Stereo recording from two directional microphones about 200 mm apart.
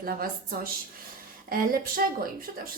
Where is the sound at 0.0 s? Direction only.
45° right (ahead or behind).